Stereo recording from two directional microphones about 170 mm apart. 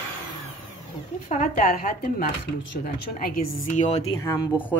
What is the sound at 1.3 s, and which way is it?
Speech, 45° left (ahead or behind).